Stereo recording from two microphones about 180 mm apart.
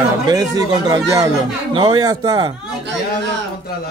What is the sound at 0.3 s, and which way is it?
Speech, 20° right (ahead or behind).